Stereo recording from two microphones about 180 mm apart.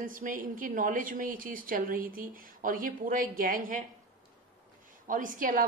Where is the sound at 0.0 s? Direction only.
50° right (ahead or behind).